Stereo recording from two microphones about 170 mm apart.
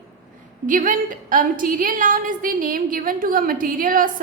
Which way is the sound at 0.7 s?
50° right (ahead or behind).